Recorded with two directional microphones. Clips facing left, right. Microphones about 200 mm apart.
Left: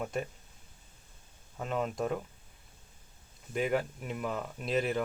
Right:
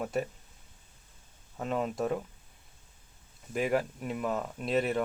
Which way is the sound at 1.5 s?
Centre (ahead or behind).